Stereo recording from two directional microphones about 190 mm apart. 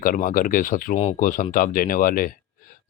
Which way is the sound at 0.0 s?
45° left (ahead or behind).